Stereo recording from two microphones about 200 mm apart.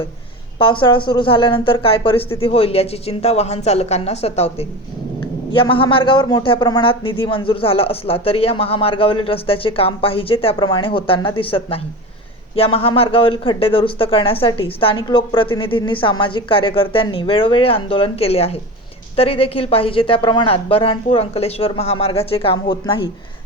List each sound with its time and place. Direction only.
0.6 s speech: 25° left (ahead or behind)